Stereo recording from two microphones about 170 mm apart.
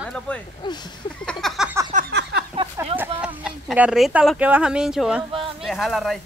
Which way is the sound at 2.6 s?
35° right (ahead or behind).